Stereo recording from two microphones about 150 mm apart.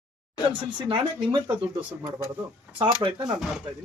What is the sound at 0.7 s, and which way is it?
Speech, 35° right (ahead or behind).